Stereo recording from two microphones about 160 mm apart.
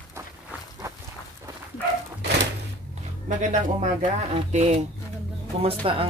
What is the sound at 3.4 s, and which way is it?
Speech, 50° right (ahead or behind).